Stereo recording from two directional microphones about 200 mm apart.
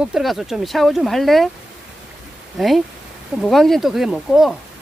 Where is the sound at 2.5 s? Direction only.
Centre (ahead or behind).